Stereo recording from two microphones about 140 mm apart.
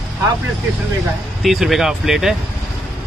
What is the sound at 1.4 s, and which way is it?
Speech, centre (ahead or behind).